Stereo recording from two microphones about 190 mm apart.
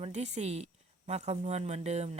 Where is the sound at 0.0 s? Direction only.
35° right (ahead or behind).